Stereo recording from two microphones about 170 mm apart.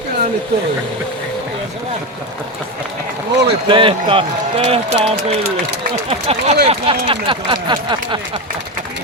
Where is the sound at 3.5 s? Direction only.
30° right (ahead or behind).